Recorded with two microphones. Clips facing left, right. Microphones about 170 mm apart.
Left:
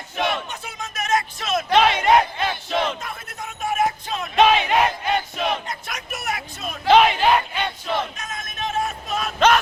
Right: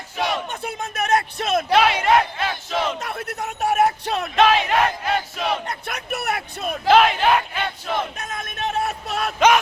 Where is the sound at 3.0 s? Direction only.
70° right (ahead or behind).